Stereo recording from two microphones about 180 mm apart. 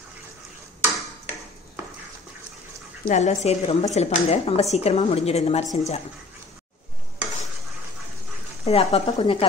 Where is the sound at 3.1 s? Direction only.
40° left (ahead or behind).